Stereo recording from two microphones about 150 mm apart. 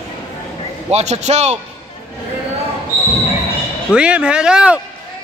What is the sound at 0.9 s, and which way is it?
Speech, 50° right (ahead or behind).